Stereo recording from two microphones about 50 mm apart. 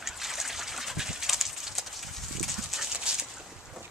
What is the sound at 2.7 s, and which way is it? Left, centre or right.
Dog, centre.